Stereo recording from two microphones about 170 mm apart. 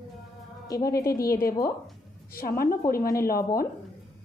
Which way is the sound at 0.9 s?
20° left (ahead or behind).